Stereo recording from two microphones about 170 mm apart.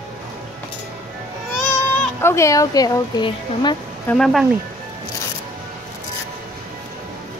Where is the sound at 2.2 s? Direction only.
15° left (ahead or behind).